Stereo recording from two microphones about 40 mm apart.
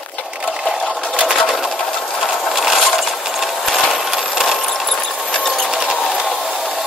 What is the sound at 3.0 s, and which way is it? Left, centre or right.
Mechanisms, centre.